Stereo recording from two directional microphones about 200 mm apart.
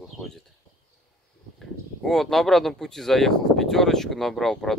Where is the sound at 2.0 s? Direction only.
Centre (ahead or behind).